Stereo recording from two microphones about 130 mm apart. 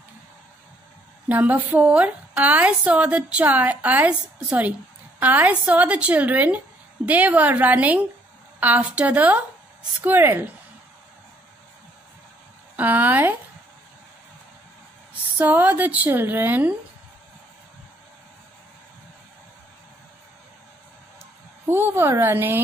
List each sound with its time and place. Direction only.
1.3 s a woman's voice: 15° right (ahead or behind)
12.7 s a woman's voice: 15° right (ahead or behind)
15.3 s a woman's voice: 15° right (ahead or behind)
21.6 s a woman's voice: 15° right (ahead or behind)